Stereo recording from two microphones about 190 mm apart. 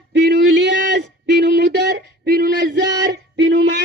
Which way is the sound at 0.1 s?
65° right (ahead or behind).